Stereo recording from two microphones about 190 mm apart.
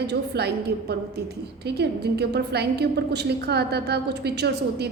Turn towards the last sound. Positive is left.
turn(degrees=-60)  # may be behind; listen again after turning